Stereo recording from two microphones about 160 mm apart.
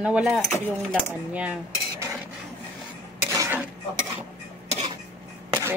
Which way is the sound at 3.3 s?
20° right (ahead or behind).